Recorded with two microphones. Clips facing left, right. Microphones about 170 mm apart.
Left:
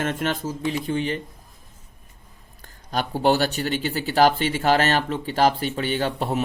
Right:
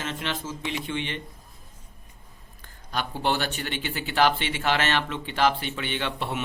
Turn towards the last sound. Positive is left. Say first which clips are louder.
# left 6 dB
turn(degrees=40)  # may be behind; listen again after turning